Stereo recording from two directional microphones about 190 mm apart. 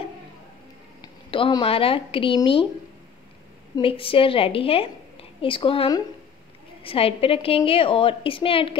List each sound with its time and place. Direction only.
1.0 s speech: 25° left (ahead or behind)
3.7 s a woman's voice: 30° left (ahead or behind)